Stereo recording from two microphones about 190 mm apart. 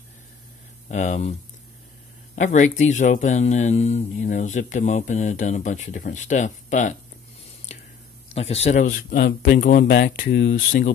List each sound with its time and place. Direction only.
0.8 s speech: 40° left (ahead or behind)
2.3 s speech: 40° left (ahead or behind)
8.3 s speech: 35° left (ahead or behind)
9.8 s speech: 60° left (ahead or behind)
10.5 s speech: 45° left (ahead or behind)